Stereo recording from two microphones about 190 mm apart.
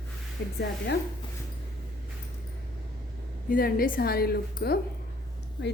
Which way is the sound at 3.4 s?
50° left (ahead or behind).